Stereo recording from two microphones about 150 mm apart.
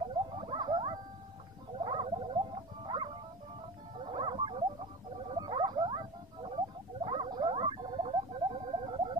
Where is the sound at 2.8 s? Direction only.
30° right (ahead or behind).